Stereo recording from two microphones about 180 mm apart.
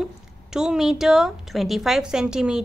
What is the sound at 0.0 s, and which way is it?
A woman's voice, 5° right (ahead or behind).